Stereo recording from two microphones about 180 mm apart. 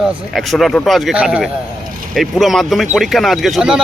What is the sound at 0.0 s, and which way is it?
Speech, centre (ahead or behind).